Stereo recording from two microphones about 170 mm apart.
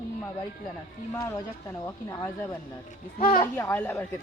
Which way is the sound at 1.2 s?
15° left (ahead or behind).